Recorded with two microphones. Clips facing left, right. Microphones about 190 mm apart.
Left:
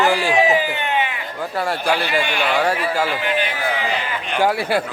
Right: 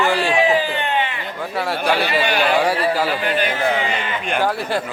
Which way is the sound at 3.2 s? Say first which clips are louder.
Right 1 dB; 40° right (ahead or behind).